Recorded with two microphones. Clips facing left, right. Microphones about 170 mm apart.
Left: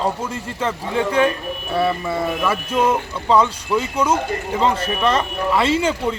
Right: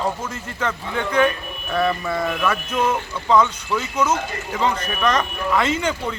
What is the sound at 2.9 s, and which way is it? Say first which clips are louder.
Speech: left 2 dB; 30° left (ahead or behind).